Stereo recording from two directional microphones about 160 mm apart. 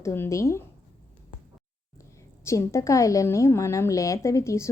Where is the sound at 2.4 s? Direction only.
20° left (ahead or behind).